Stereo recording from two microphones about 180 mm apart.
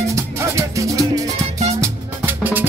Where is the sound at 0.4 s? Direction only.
15° right (ahead or behind).